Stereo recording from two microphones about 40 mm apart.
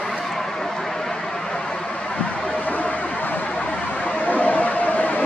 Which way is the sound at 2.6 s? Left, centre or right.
Left.